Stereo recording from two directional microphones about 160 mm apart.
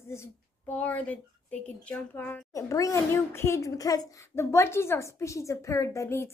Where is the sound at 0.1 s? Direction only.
15° left (ahead or behind).